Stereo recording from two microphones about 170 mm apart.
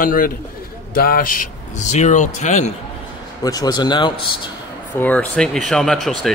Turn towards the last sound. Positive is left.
turn(degrees=0)  # may be behind; listen again after turning